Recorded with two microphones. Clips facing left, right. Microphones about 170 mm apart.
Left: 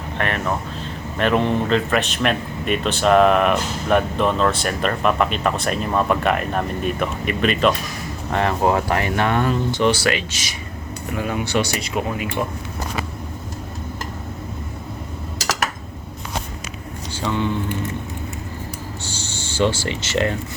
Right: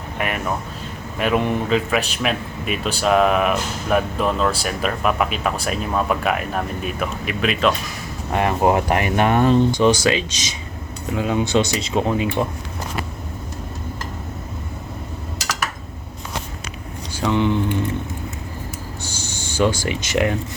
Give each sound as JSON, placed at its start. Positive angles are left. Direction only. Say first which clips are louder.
{"t": 0.2, "sound": "speech", "louder": "left 1 dB", "side_deg": -10}
{"t": 8.3, "sound": "speech", "louder": "right 1 dB", "side_deg": -15}
{"t": 17.2, "sound": "speech", "louder": "right 4 dB", "side_deg": -15}
{"t": 19.0, "sound": "a sound", "louder": "even", "side_deg": -15}
{"t": 19.7, "sound": "speech", "louder": "right 1 dB", "side_deg": -15}